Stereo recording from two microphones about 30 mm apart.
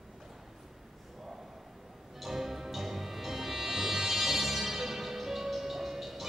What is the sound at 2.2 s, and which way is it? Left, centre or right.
Music, centre.